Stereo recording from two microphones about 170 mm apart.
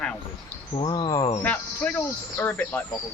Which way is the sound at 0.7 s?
30° left (ahead or behind).